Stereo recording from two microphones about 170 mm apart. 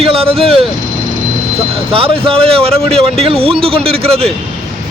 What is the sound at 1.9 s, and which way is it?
Speech, 35° right (ahead or behind).